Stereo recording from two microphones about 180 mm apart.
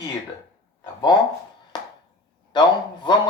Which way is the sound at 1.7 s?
25° left (ahead or behind).